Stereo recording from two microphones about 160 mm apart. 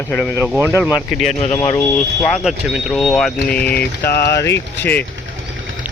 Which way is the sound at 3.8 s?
80° left.